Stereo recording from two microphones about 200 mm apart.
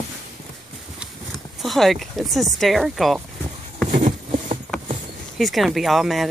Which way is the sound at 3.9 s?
40° right (ahead or behind).